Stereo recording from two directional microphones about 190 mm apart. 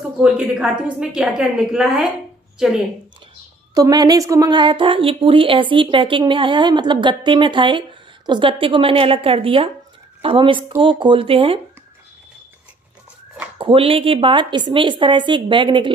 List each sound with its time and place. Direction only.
0.2 s a woman's voice: 5° right (ahead or behind)
3.7 s a woman's voice: 20° right (ahead or behind)
13.6 s a woman's voice: 30° right (ahead or behind)